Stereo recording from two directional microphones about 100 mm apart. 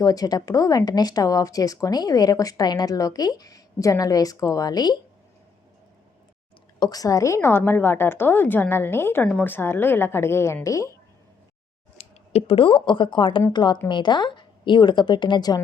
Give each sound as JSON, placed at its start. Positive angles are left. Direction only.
{"t": 0.0, "sound": "speech", "side_deg": 40}
{"t": 6.7, "sound": "a woman's voice", "side_deg": 45}
{"t": 11.9, "sound": "speech", "side_deg": 85}